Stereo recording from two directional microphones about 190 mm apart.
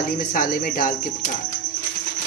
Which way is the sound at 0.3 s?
50° left (ahead or behind).